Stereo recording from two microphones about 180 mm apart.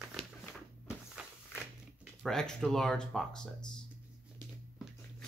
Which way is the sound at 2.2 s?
5° left (ahead or behind).